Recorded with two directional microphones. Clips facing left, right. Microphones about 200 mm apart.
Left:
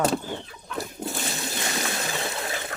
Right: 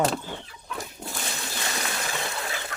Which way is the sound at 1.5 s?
20° left (ahead or behind).